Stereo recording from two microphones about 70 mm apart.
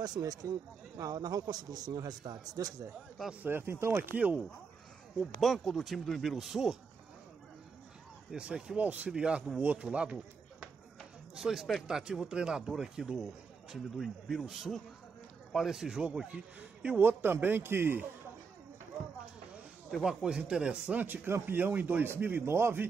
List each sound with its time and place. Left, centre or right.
0.0 s a man's voice: right
3.4 s speech: right
5.2 s speech: centre
8.3 s speech: centre
11.3 s speech: centre; by 18.0 s right
20.0 s speech: centre
21.0 s speech: right